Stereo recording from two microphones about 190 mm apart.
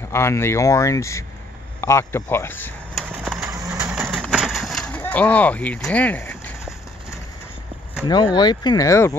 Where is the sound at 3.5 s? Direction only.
15° right (ahead or behind); by 6.5 s 10° left (ahead or behind).